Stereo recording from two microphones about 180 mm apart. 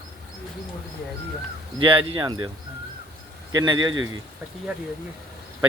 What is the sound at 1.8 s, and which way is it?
Speech, 30° right (ahead or behind).